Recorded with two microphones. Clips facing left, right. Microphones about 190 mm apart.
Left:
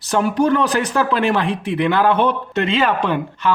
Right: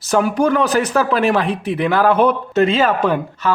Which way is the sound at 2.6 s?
40° right (ahead or behind).